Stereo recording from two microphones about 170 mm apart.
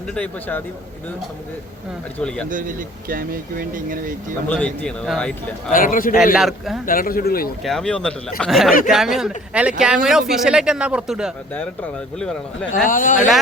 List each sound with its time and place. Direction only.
0.1 s a man's voice: 10° left (ahead or behind)
2.1 s speech: 5° left (ahead or behind)
2.5 s speech: 50° right (ahead or behind)
4.4 s a man's voice: 10° left (ahead or behind)
5.7 s speech: 55° left (ahead or behind)
6.3 s speech: centre (ahead or behind)
6.8 s speech: 55° left (ahead or behind)
7.6 s speech: 5° left (ahead or behind)
11.5 s a man's voice: 10° left (ahead or behind)
12.9 s speech: 50° left (ahead or behind)